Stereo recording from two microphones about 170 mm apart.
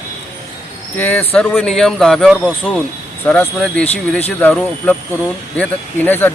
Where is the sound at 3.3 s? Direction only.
10° left (ahead or behind).